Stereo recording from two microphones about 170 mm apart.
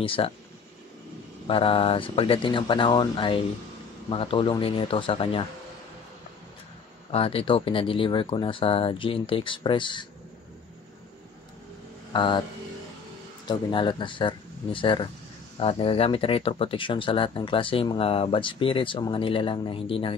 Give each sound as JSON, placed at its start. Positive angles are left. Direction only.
{"t": 0.0, "sound": "speech", "side_deg": 30}
{"t": 1.5, "sound": "speech", "side_deg": 35}
{"t": 7.1, "sound": "speech", "side_deg": 35}
{"t": 12.1, "sound": "speech", "side_deg": 30}
{"t": 13.5, "sound": "speech", "side_deg": 25}